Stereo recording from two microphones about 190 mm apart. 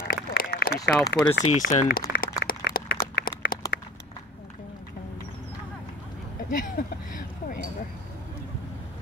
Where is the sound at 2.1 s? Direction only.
55° left (ahead or behind).